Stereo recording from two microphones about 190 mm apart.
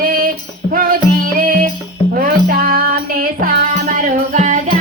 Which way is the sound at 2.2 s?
50° right (ahead or behind).